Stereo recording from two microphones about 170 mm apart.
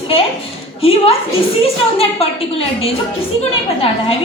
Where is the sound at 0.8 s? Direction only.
35° left (ahead or behind).